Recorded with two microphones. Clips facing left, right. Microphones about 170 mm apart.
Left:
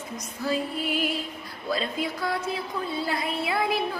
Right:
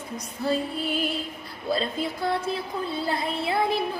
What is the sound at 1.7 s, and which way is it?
A woman's voice, 30° right (ahead or behind).